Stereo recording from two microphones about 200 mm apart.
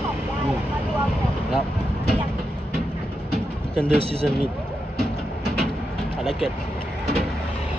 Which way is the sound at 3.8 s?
30° right (ahead or behind).